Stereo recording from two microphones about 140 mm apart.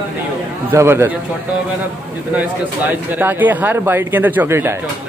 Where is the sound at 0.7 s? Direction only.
15° right (ahead or behind).